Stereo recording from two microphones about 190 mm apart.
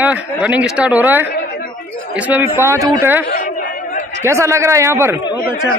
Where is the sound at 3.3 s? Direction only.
40° left (ahead or behind).